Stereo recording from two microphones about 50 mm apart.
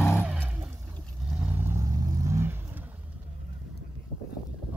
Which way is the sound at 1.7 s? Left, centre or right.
Right.